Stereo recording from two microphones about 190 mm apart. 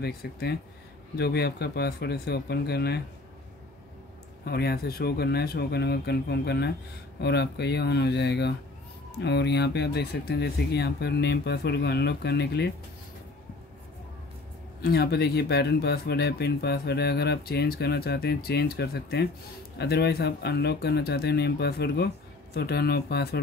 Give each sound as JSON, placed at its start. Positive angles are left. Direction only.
{"t": 0.0, "sound": "speech", "side_deg": 55}
{"t": 4.5, "sound": "speech", "side_deg": 55}
{"t": 14.8, "sound": "speech", "side_deg": 55}